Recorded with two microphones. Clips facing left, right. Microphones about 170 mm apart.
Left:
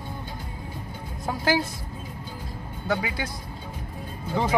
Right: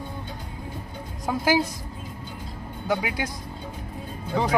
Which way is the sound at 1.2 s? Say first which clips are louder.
Right 2 dB; 15° right (ahead or behind).